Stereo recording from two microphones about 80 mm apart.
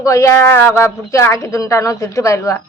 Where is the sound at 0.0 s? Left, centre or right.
Left.